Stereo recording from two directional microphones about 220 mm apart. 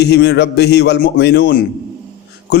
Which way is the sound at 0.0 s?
50° left (ahead or behind).